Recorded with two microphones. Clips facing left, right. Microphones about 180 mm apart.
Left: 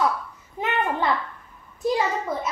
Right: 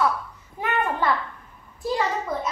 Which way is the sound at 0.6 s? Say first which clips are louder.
Even; 20° left (ahead or behind).